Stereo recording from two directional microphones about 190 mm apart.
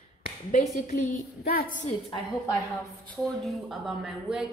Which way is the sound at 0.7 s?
45° left (ahead or behind).